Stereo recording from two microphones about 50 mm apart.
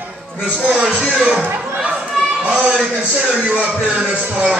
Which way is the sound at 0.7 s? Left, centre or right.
Right.